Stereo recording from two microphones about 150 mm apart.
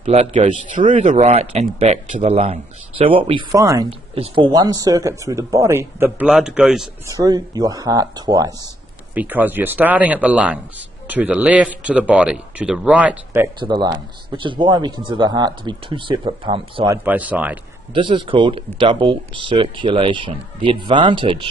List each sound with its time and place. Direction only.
0.0 s a man's voice: 45° right (ahead or behind)
3.5 s speech: 20° right (ahead or behind)
4.1 s speech: 40° right (ahead or behind)
4.5 s speech: 25° right (ahead or behind); by 6.9 s 5° right (ahead or behind)
7.1 s speech: 25° right (ahead or behind)
9.1 s speech: 10° right (ahead or behind)
13.6 s a man's voice: 30° right (ahead or behind)
16.9 s speech: 10° right (ahead or behind)
17.9 s a man's voice: 35° right (ahead or behind)